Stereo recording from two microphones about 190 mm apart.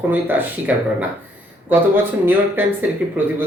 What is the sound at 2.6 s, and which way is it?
Speech, 10° right (ahead or behind).